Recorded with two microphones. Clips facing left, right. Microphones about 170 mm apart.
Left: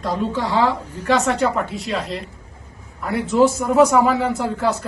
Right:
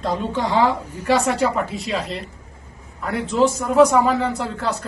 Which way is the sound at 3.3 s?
10° left (ahead or behind).